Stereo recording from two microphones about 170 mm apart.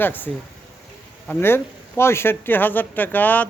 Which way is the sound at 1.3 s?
15° left (ahead or behind).